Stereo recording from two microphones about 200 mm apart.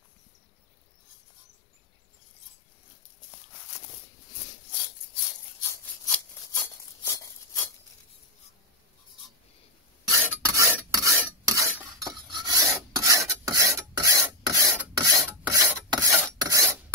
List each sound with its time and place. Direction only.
5.6 s a sound: 10° left (ahead or behind)
10.2 s filing: 15° right (ahead or behind)
12.3 s filing: 20° right (ahead or behind)